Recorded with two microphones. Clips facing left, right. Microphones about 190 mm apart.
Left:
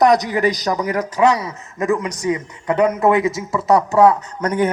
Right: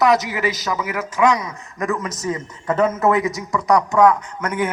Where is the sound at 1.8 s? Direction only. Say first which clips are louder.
Left 4 dB; 15° left (ahead or behind).